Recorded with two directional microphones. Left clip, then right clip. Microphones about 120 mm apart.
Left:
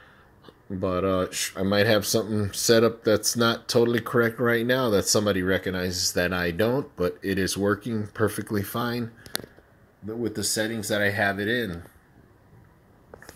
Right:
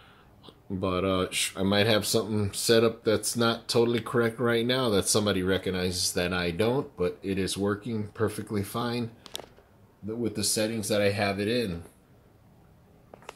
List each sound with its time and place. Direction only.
0.7 s speech: 10° left (ahead or behind)
2.5 s speech: 25° left (ahead or behind)
6.8 s speech: 40° left (ahead or behind)
10.0 s speech: 15° left (ahead or behind)